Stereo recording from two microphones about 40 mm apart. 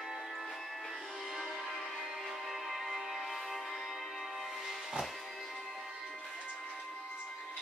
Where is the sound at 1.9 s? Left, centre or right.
Centre.